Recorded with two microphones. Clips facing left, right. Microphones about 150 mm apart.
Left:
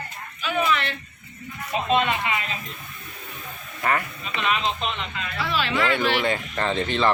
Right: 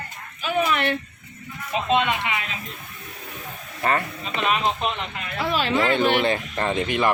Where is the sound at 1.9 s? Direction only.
20° right (ahead or behind).